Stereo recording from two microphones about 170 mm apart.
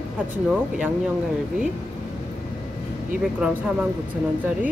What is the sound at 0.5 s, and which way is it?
Speech, 5° right (ahead or behind).